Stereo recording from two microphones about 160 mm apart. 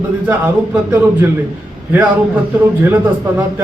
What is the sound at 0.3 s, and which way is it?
Speech, 15° right (ahead or behind).